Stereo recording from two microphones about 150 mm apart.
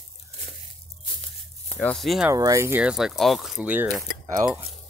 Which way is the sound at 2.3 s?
20° right (ahead or behind).